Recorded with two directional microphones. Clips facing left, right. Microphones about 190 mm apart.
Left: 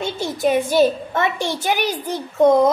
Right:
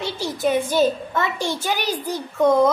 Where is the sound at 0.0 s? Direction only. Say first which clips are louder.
Left 2 dB; 20° left (ahead or behind).